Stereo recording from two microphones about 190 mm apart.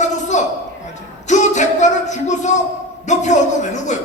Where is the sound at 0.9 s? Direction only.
40° left (ahead or behind).